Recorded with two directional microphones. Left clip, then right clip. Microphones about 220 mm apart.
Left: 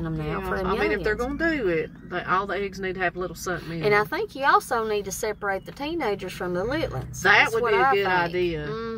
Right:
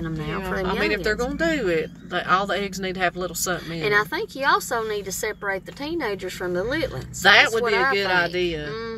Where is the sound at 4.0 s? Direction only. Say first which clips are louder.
Right 1 dB; 15° left (ahead or behind).